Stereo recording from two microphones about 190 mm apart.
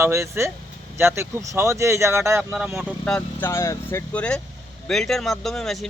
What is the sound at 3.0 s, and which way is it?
Speech, 5° left (ahead or behind).